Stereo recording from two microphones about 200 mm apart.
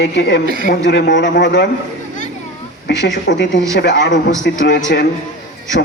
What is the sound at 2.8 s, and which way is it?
A man's voice, 60° left (ahead or behind).